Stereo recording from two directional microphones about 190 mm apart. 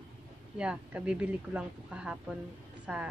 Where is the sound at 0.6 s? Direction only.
5° right (ahead or behind).